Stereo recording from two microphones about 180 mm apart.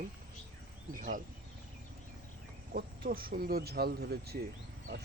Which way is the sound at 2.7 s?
55° right (ahead or behind).